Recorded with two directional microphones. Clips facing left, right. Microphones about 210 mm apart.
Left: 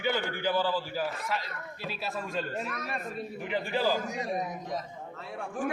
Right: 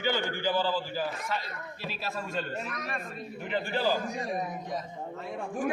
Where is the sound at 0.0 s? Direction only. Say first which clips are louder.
Even; 5° left (ahead or behind).